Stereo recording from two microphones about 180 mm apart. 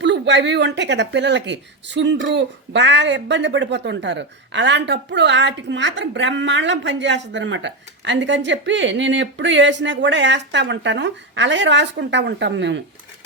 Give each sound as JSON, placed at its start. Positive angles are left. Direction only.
{"t": 0.0, "sound": "speech", "side_deg": -80}